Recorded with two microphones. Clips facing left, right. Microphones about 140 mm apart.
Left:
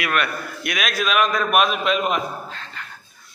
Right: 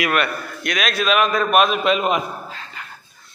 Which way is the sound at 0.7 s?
Centre (ahead or behind).